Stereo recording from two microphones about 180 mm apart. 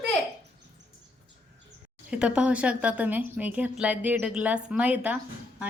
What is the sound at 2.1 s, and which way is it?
A woman's voice, 5° right (ahead or behind).